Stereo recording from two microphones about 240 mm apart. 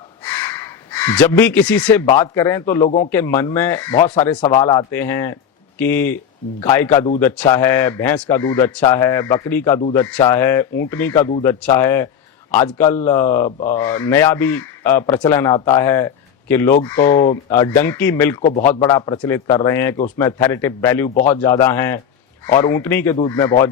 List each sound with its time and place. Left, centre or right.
0.3 s speech: centre